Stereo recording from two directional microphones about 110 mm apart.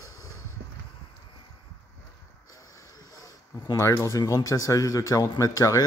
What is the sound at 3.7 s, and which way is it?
Speech, 25° left (ahead or behind).